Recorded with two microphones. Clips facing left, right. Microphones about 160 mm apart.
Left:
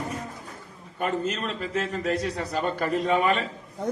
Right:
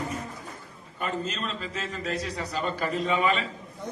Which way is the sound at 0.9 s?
55° left (ahead or behind).